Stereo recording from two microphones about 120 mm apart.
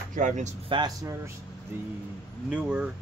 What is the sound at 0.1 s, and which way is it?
Speech, 85° right.